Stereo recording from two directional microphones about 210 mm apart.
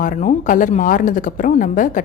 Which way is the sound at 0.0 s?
40° left (ahead or behind).